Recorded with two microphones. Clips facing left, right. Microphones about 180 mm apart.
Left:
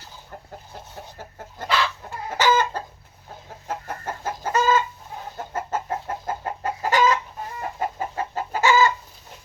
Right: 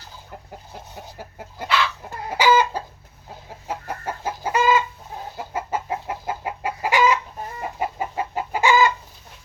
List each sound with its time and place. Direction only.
1.2 s chicken: 10° right (ahead or behind)